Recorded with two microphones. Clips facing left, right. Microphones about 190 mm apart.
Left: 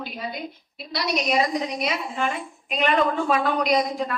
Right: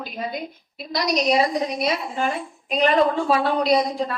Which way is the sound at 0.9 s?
40° right (ahead or behind).